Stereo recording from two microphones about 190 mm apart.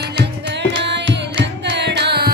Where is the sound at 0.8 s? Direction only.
70° right (ahead or behind).